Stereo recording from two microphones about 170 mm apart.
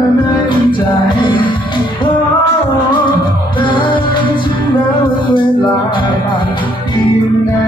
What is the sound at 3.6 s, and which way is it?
Music, 30° left (ahead or behind).